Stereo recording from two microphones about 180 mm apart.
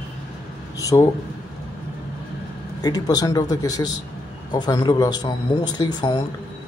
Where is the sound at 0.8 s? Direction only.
20° left (ahead or behind).